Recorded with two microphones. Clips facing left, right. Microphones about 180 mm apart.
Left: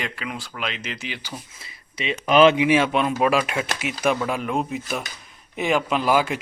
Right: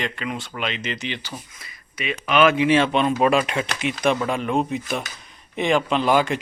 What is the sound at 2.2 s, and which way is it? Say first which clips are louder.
Speech: left 3 dB; 30° left (ahead or behind).